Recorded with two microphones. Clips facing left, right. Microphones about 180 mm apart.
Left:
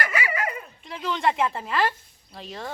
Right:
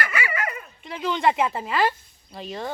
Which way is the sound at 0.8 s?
Centre (ahead or behind).